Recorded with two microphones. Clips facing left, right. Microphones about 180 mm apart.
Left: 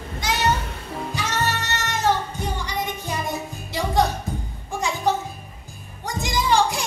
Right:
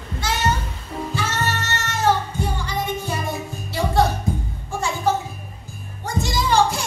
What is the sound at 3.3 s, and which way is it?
Music, 15° left (ahead or behind).